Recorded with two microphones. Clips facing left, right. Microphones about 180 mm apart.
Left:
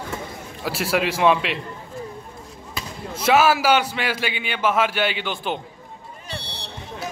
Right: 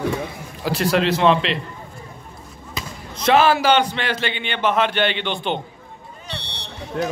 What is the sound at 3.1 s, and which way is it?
A man's voice, 5° left (ahead or behind).